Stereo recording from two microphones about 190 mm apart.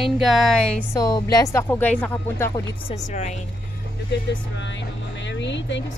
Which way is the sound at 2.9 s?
35° left (ahead or behind).